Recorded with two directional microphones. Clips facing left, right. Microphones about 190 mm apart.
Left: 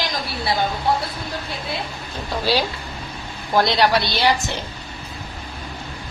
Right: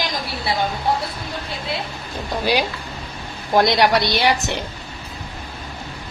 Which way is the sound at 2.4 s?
15° right (ahead or behind).